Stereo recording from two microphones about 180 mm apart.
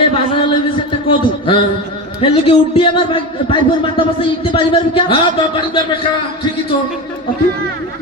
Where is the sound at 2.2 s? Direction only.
30° left (ahead or behind).